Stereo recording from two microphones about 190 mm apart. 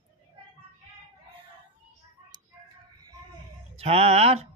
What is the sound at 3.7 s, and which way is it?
Speech, 35° right (ahead or behind).